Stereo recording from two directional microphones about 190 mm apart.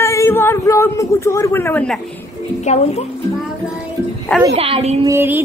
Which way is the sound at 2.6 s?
35° left (ahead or behind).